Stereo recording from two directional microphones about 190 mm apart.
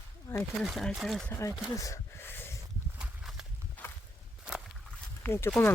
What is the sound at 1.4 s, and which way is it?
Speech, 15° left (ahead or behind).